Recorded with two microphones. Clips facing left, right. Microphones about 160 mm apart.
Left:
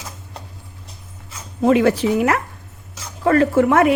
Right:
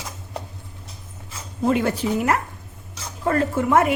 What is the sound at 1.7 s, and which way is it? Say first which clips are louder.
A woman's voice: left 6 dB; 90° left.